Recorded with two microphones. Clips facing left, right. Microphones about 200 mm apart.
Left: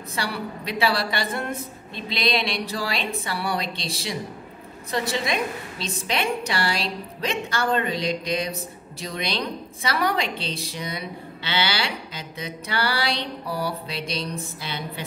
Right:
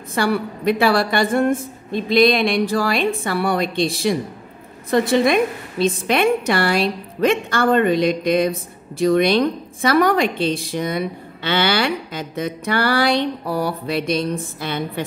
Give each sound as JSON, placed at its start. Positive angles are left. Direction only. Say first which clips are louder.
{"t": 0.1, "sound": "a woman's voice", "louder": "right 10 dB", "side_deg": -50}